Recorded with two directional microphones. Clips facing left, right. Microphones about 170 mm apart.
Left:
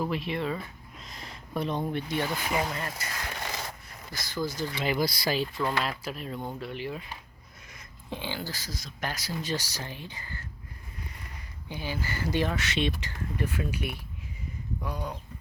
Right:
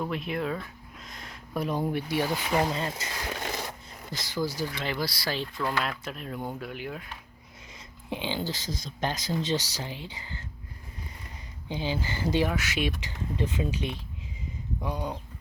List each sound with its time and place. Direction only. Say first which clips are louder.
0.0 s speech: even; centre (ahead or behind)
2.6 s speech: right 4 dB; 25° right (ahead or behind)
4.1 s speech: right 2 dB; 15° right (ahead or behind)
4.7 s speech: left 3 dB; 5° left (ahead or behind)
4.9 s speech: left 4 dB; 15° left (ahead or behind)
5.6 s speech: even; centre (ahead or behind)
8.1 s speech: right 4 dB; 20° right (ahead or behind)
11.7 s speech: right 3 dB; 20° right (ahead or behind)